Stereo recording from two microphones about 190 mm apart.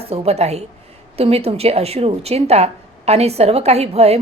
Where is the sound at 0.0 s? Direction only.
30° right (ahead or behind).